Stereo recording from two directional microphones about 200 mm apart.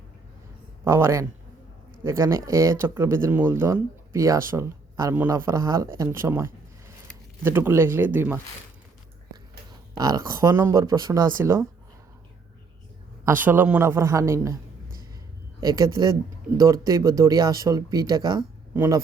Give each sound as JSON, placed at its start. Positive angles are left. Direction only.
{"t": 0.9, "sound": "speech", "side_deg": -15}
{"t": 10.0, "sound": "speech", "side_deg": -20}
{"t": 13.2, "sound": "speech", "side_deg": -10}
{"t": 15.6, "sound": "speech", "side_deg": -20}